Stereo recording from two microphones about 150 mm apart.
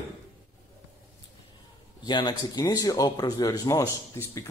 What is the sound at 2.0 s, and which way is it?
Speech, 30° left (ahead or behind).